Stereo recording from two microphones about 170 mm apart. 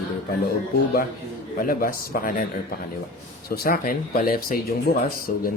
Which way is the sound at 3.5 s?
60° left (ahead or behind).